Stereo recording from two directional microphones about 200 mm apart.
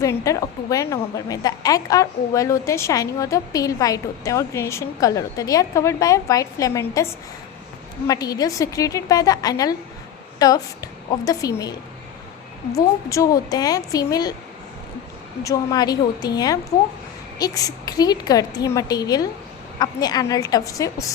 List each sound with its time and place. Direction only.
0.0 s a woman's voice: 15° left (ahead or behind)
13.1 s a woman's voice: 15° left (ahead or behind)
15.4 s a woman's voice: 20° left (ahead or behind)